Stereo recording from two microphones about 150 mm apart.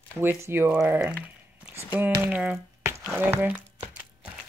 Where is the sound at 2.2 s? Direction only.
10° right (ahead or behind).